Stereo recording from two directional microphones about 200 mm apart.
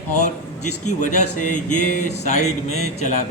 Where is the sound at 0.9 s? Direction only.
40° left (ahead or behind).